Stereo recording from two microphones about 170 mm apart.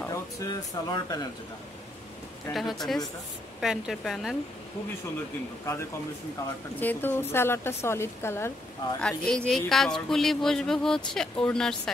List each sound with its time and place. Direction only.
0.0 s speech: 20° left (ahead or behind)
2.5 s speech: centre (ahead or behind)
6.8 s a woman's voice: 10° left (ahead or behind)